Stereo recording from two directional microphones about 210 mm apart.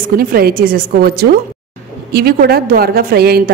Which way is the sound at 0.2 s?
45° right (ahead or behind).